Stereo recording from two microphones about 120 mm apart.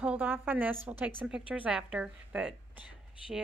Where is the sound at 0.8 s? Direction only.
10° right (ahead or behind).